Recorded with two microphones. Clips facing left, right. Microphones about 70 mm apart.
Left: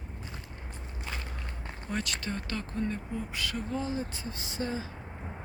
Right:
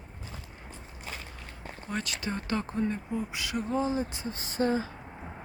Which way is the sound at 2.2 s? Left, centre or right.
Right.